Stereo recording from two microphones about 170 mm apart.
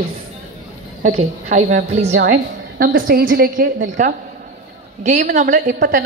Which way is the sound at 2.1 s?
60° right (ahead or behind).